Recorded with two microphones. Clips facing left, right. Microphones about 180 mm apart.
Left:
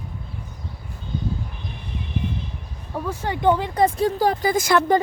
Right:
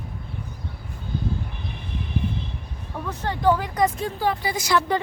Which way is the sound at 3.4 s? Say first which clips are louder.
Left 2 dB; 25° left (ahead or behind).